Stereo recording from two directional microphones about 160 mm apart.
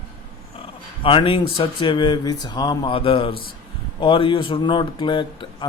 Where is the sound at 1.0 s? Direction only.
35° left (ahead or behind).